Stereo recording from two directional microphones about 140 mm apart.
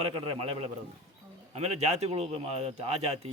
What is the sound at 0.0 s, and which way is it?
Speech, 45° right (ahead or behind).